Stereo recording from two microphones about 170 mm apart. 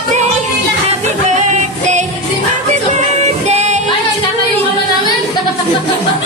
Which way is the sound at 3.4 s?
40° right (ahead or behind).